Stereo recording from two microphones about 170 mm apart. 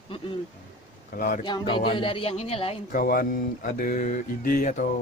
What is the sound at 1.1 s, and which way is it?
Speech, 50° left (ahead or behind).